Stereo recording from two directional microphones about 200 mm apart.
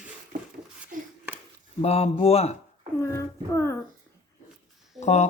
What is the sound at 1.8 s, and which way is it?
Speech, 30° left (ahead or behind).